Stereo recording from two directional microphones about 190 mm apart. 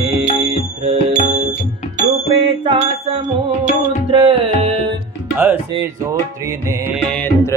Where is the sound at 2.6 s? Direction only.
25° right (ahead or behind).